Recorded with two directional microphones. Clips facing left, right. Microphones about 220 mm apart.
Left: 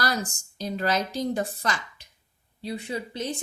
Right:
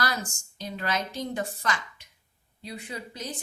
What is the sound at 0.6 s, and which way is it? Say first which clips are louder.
A woman's voice: left 5 dB; 35° left (ahead or behind).